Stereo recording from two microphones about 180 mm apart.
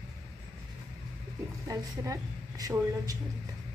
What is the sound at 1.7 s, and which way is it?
A woman's voice, 20° right (ahead or behind).